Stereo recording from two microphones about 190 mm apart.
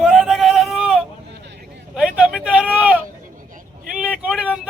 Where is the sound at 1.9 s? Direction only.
5° right (ahead or behind).